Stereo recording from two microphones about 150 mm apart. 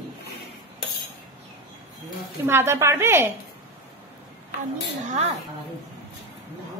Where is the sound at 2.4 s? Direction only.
15° right (ahead or behind).